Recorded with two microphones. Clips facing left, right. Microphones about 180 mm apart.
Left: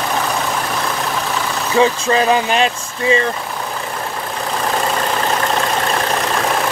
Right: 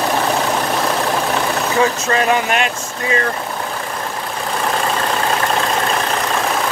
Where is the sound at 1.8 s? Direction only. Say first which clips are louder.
Left 4 dB; 25° left (ahead or behind).